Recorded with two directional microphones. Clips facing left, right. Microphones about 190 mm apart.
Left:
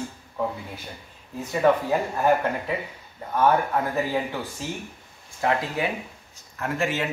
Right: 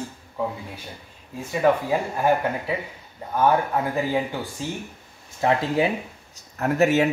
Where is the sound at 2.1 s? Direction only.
10° right (ahead or behind).